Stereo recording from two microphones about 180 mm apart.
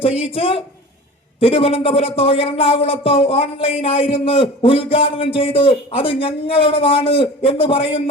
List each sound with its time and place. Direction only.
0.0 s speech: 30° left (ahead or behind)